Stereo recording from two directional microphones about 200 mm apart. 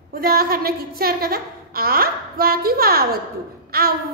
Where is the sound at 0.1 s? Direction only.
50° right (ahead or behind).